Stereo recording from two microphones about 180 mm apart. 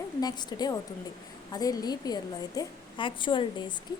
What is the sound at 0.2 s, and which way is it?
A woman's voice, 20° left (ahead or behind).